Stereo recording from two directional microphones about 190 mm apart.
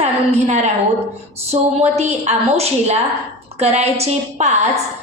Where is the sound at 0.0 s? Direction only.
35° right (ahead or behind).